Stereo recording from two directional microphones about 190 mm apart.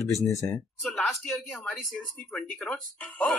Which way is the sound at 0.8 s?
Centre (ahead or behind).